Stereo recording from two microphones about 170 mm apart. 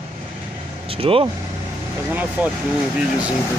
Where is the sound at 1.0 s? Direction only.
35° right (ahead or behind).